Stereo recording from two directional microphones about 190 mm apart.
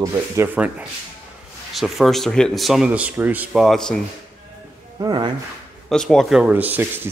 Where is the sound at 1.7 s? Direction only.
Centre (ahead or behind).